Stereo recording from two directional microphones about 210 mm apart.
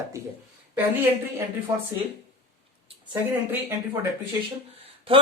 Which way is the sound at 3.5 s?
10° right (ahead or behind).